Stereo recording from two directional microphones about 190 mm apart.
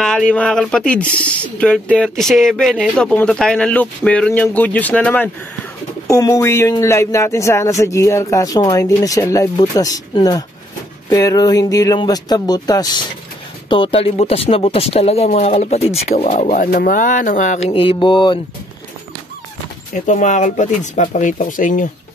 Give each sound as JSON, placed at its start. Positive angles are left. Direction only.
{"t": 0.0, "sound": "speech", "side_deg": 5}
{"t": 16.3, "sound": "speech", "side_deg": 45}
{"t": 20.1, "sound": "speech", "side_deg": 40}